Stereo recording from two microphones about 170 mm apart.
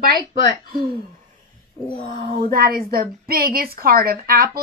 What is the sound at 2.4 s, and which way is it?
A woman's voice, 60° right (ahead or behind).